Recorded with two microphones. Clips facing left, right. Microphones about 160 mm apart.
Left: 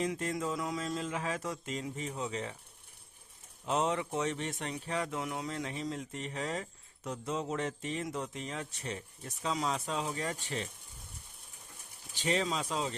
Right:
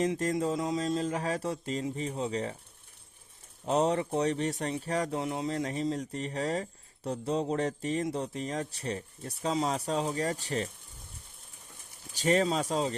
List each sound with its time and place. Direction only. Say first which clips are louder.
0.2 s speech: right 5 dB; 35° right (ahead or behind)
3.7 s speech: right 5 dB; 35° right (ahead or behind)
12.1 s speech: right 6 dB; 45° right (ahead or behind)